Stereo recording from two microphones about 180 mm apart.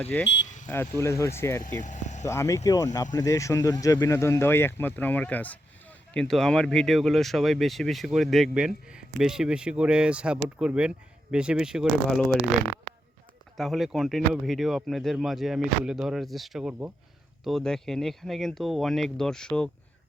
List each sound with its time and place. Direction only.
0.0 s speech: 10° left (ahead or behind)
0.4 s vehicle: 45° left (ahead or behind)
0.7 s speech: 15° left (ahead or behind)
1.6 s speech: 45° left (ahead or behind)
2.2 s speech: 15° left (ahead or behind); by 12.4 s centre (ahead or behind)
13.6 s speech: centre (ahead or behind)